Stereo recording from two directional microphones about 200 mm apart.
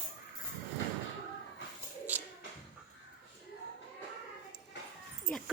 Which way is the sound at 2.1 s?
10° right (ahead or behind).